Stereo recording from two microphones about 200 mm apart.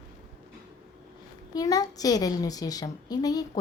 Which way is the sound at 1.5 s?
20° left (ahead or behind).